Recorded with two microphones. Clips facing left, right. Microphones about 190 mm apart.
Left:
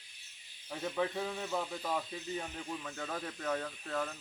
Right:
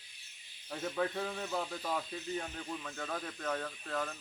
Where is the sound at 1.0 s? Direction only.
5° left (ahead or behind).